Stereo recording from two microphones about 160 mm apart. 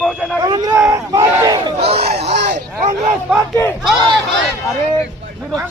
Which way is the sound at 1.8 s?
40° right (ahead or behind).